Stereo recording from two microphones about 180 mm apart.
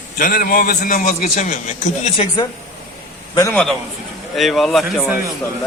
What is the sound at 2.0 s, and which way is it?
Speech, 30° left (ahead or behind).